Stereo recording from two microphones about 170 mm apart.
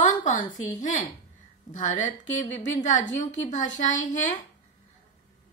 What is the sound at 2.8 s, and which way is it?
A woman's voice, 45° left (ahead or behind).